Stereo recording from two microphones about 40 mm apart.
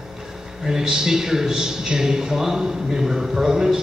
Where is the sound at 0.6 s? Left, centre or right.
Centre.